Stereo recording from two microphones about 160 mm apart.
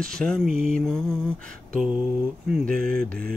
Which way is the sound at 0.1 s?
5° left (ahead or behind).